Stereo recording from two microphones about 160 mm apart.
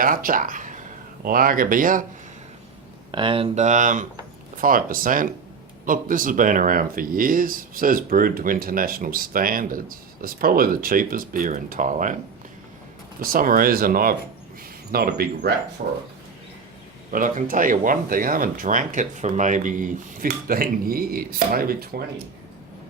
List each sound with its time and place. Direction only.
0.0 s speech: 60° right (ahead or behind)
3.1 s speech: 30° right (ahead or behind); by 12.1 s 55° right (ahead or behind)
13.2 s speech: 65° right (ahead or behind); by 15.5 s 80° right
15.8 s speech: 55° right (ahead or behind)
17.1 s speech: 55° right (ahead or behind)